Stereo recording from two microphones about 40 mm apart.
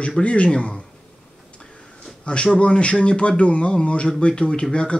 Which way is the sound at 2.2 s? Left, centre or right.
Left.